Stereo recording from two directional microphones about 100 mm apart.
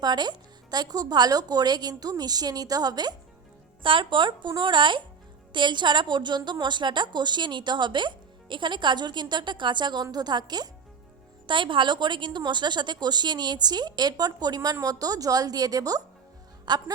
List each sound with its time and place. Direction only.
0.0 s a woman's voice: 45° right (ahead or behind)
3.8 s a woman's voice: 55° right (ahead or behind)
11.4 s a woman's voice: 55° right (ahead or behind)